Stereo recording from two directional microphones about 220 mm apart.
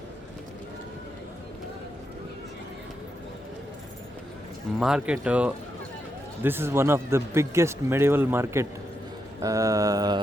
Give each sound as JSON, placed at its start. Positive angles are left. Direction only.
{"t": 4.8, "sound": "speech", "side_deg": -5}